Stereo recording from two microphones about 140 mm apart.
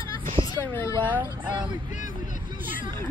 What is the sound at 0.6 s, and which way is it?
Speech, 15° left (ahead or behind).